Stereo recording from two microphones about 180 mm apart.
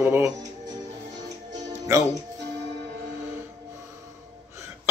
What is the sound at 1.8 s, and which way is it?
Music, 15° right (ahead or behind).